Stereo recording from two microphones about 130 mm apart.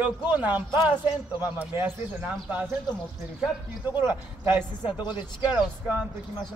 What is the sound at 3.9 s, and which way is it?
Speech, 15° right (ahead or behind).